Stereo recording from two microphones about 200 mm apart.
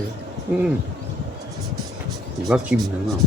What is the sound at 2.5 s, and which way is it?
Speech, centre (ahead or behind).